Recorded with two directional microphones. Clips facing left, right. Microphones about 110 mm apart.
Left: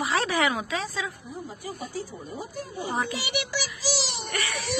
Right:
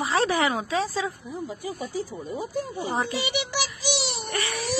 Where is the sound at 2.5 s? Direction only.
30° right (ahead or behind).